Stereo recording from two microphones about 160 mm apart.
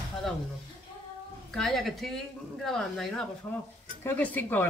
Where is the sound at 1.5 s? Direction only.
Centre (ahead or behind).